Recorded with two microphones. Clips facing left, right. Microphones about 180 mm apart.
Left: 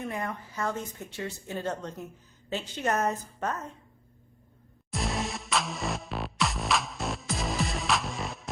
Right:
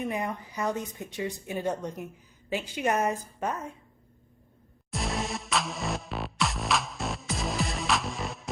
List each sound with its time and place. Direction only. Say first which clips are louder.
0.0 s speech: right 3 dB; 15° right (ahead or behind)
4.9 s music: even; centre (ahead or behind)